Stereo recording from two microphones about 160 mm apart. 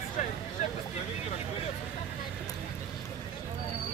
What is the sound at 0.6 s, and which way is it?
Speech, 50° left (ahead or behind).